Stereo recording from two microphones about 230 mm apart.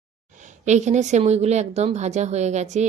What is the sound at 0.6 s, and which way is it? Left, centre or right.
A woman's voice, right.